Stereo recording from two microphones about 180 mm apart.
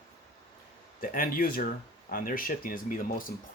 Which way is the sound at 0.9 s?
50° left (ahead or behind).